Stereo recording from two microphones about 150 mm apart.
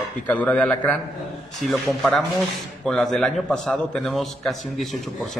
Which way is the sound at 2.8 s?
5° left (ahead or behind).